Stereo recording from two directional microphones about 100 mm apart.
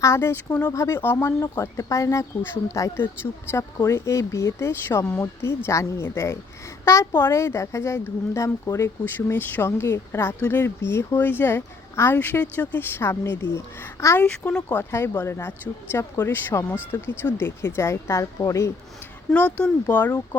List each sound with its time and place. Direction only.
0.0 s speech: 25° left (ahead or behind)
14.2 s speech: 15° left (ahead or behind)
14.8 s speech: 25° left (ahead or behind)
19.3 s speech: 15° left (ahead or behind)